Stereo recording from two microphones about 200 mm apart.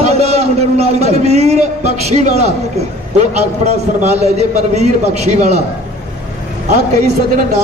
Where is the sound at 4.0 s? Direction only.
35° right (ahead or behind).